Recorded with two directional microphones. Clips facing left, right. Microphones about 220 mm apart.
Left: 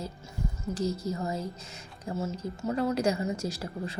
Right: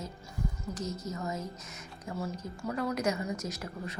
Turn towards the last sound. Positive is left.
turn(degrees=30)  # may be behind; listen again after turning